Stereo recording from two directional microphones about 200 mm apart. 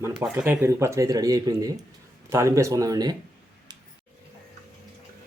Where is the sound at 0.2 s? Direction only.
10° right (ahead or behind).